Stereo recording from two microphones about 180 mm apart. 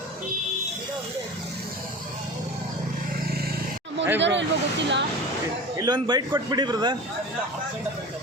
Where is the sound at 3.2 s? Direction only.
60° right (ahead or behind).